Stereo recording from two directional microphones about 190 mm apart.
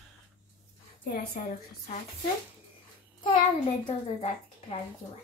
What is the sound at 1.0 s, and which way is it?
Speech, 50° left (ahead or behind).